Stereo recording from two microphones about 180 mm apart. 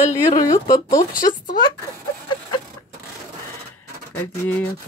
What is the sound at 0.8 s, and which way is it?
Speech, 50° left (ahead or behind).